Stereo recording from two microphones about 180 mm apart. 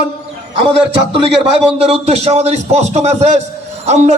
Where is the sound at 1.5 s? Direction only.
35° right (ahead or behind).